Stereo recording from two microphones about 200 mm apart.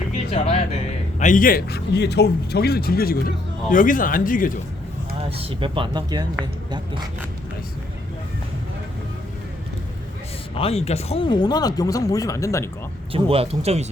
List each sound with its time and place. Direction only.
0.3 s speech: 30° left (ahead or behind)
1.2 s a man's voice: 40° left (ahead or behind)
5.4 s speech: 25° right (ahead or behind)
10.5 s speech: 30° left (ahead or behind)
13.1 s speech: 30° right (ahead or behind)